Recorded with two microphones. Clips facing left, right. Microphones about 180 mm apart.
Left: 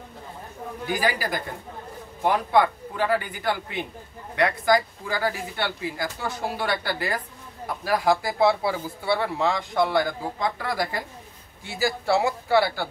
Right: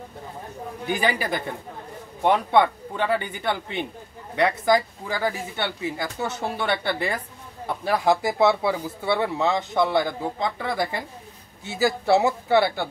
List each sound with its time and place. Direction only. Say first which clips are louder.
0.8 s speech: right 1 dB; 25° right (ahead or behind)